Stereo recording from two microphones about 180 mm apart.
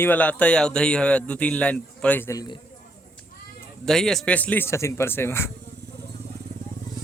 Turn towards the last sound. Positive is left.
turn(degrees=15)  # may be behind; listen again after turning